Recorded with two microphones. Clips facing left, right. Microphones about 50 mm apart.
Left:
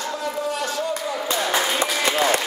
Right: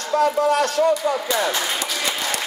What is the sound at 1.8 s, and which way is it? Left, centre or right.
Speech, left.